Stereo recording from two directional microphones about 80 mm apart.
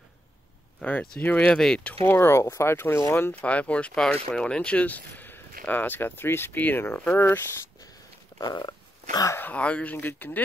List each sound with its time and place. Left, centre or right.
0.7 s speech: centre
1.5 s speech: centre
1.8 s speech: centre
2.1 s speech: left
3.3 s speech: centre
8.4 s a sound: left
9.4 s speech: centre